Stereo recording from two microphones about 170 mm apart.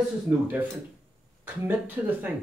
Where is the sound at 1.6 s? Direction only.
10° right (ahead or behind).